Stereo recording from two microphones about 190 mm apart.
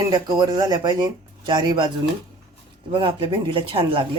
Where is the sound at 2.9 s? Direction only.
30° right (ahead or behind).